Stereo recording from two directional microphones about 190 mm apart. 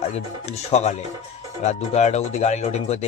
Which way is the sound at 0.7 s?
35° left (ahead or behind).